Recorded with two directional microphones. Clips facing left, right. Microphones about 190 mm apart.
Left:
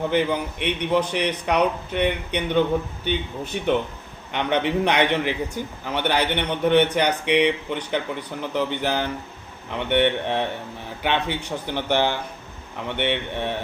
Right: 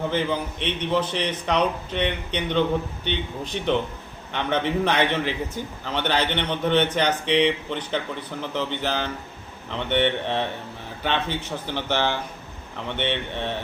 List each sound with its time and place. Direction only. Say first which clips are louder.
0.1 s a man's voice: left 3 dB; 15° left (ahead or behind)